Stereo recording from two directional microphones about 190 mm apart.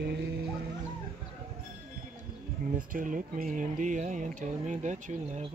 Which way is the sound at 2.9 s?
45° right (ahead or behind).